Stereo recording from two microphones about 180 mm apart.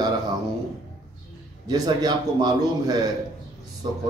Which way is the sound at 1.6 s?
20° right (ahead or behind).